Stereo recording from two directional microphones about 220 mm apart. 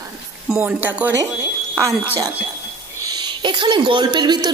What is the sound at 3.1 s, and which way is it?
Speech, 20° right (ahead or behind).